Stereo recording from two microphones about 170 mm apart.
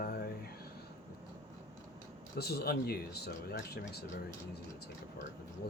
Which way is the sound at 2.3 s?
70° left (ahead or behind).